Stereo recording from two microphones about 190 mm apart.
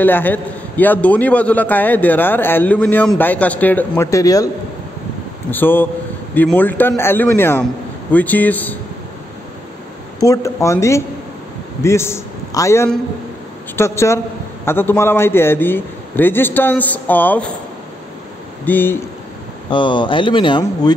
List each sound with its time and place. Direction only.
0.0 s a man's voice: 10° left (ahead or behind)
5.5 s a man's voice: 10° left (ahead or behind)
10.2 s a man's voice: 15° left (ahead or behind)
18.7 s a man's voice: 10° left (ahead or behind)
19.7 s speech: 25° left (ahead or behind)